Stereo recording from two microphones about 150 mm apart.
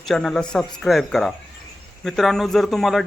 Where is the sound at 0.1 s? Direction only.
5° left (ahead or behind).